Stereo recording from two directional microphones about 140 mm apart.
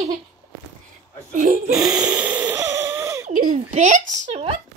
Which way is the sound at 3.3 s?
75° right (ahead or behind).